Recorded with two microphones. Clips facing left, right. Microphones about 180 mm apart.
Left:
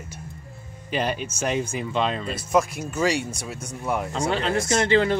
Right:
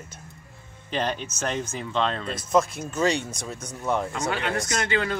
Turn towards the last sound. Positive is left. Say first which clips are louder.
# left 6 dB
turn(degrees=30)  # may be behind; listen again after turning